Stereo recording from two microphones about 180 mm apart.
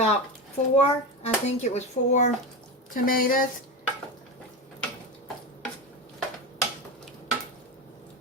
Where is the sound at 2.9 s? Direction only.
50° left (ahead or behind).